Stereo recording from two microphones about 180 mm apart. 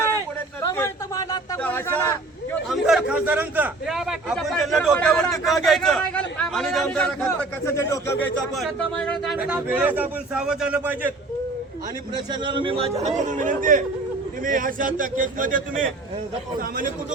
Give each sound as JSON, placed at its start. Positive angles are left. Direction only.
{"t": 0.6, "sound": "a sound", "side_deg": 15}
{"t": 1.6, "sound": "a man's voice", "side_deg": 10}
{"t": 2.6, "sound": "a man's voice", "side_deg": -5}
{"t": 8.5, "sound": "a man's voice", "side_deg": 0}
{"t": 12.1, "sound": "a man's voice", "side_deg": -25}